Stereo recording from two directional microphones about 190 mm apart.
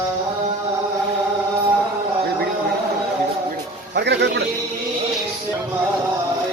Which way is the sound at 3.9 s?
65° right (ahead or behind).